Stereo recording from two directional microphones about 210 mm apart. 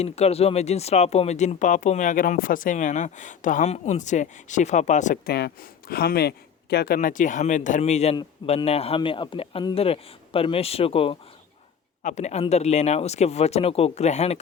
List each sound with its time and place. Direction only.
0.0 s a man's voice: 30° left (ahead or behind)